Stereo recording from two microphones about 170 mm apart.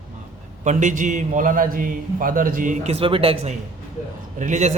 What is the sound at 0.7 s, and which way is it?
A man's voice, 45° right (ahead or behind).